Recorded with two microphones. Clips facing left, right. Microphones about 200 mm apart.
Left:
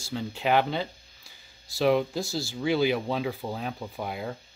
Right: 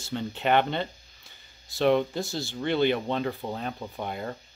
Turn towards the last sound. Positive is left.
turn(degrees=5)  # may be behind; listen again after turning